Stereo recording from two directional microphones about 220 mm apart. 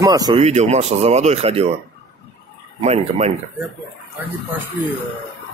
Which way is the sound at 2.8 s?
30° right (ahead or behind).